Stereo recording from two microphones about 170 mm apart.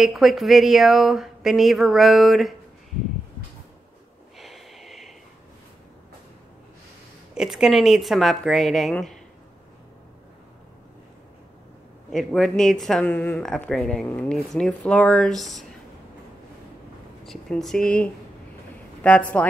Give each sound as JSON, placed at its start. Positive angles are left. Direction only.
{"t": 0.0, "sound": "speech", "side_deg": 0}
{"t": 4.4, "sound": "snort", "side_deg": 0}
{"t": 7.3, "sound": "speech", "side_deg": -5}
{"t": 12.1, "sound": "speech", "side_deg": 5}
{"t": 17.2, "sound": "a woman's voice", "side_deg": 0}